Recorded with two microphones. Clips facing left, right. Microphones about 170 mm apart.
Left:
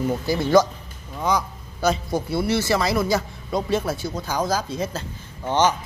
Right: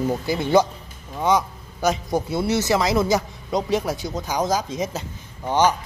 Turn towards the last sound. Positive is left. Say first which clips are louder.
# right 1 dB
turn(degrees=-10)  # may be behind; listen again after turning